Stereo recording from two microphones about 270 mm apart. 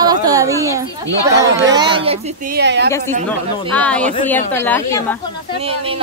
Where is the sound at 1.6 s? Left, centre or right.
Centre.